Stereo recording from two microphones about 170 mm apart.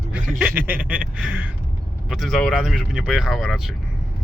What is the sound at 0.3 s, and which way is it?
Speech, 5° right (ahead or behind).